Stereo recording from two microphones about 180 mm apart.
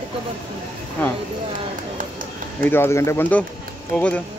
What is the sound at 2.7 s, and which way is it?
Speech, 15° left (ahead or behind).